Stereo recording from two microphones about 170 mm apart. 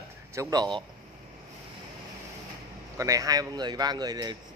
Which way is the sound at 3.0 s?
20° right (ahead or behind).